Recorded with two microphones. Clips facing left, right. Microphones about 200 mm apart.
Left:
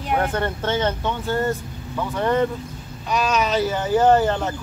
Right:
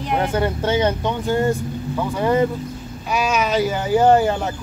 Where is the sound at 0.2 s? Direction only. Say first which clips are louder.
Right 3 dB; 10° right (ahead or behind).